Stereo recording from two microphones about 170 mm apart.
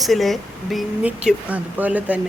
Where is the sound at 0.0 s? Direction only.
Centre (ahead or behind).